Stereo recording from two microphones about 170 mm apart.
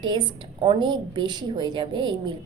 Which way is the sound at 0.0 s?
30° right (ahead or behind).